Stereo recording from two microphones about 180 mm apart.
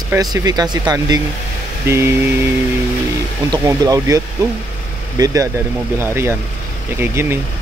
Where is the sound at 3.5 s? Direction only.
20° right (ahead or behind).